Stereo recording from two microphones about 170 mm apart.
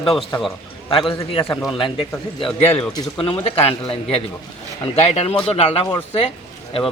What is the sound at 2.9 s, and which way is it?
A man's voice, 30° left (ahead or behind).